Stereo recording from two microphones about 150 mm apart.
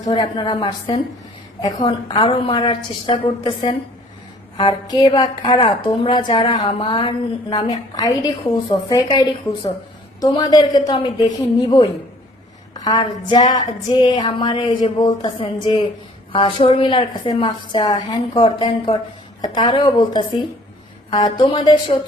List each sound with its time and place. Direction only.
0.0 s a woman's voice: 30° left (ahead or behind)
11.3 s a woman's voice: 25° left (ahead or behind)